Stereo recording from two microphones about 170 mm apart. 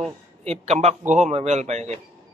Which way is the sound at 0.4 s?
40° right (ahead or behind).